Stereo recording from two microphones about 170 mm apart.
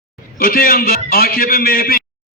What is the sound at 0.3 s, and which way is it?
A man's voice, 60° left (ahead or behind).